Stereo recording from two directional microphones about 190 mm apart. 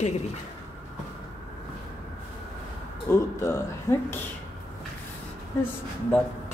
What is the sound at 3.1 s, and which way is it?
Speech, 15° left (ahead or behind).